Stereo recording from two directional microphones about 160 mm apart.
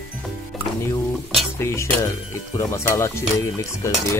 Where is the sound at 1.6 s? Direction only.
15° left (ahead or behind).